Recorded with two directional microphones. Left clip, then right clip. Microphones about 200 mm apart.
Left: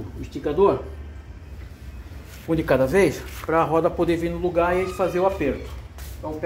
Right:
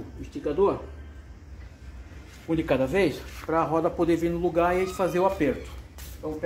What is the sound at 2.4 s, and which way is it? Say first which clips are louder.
Speech: left 5 dB; 20° left (ahead or behind).